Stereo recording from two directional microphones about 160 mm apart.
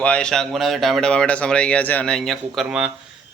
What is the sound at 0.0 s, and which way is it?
Speech, 5° left (ahead or behind).